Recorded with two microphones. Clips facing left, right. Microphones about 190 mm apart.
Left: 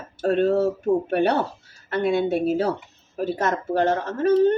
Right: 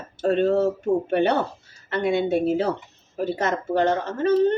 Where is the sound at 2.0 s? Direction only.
20° right (ahead or behind).